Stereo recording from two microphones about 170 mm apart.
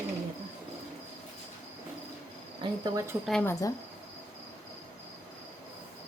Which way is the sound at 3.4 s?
20° left (ahead or behind).